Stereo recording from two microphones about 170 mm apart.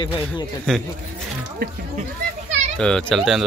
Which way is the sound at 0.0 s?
25° left (ahead or behind).